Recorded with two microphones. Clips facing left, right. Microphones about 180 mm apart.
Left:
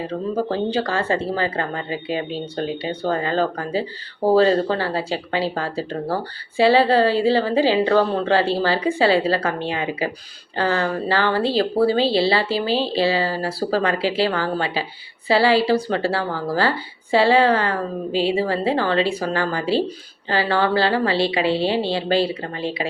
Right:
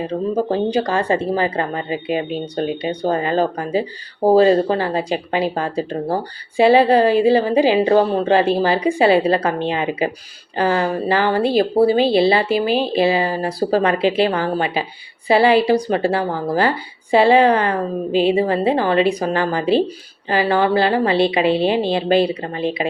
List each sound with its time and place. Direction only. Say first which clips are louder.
0.5 s a woman's voice: right 3 dB; 20° right (ahead or behind)